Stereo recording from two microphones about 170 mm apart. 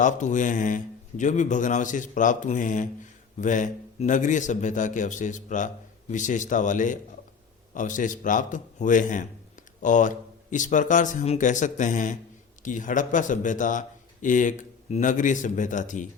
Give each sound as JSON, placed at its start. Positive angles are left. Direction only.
{"t": 0.0, "sound": "a man's voice", "side_deg": 45}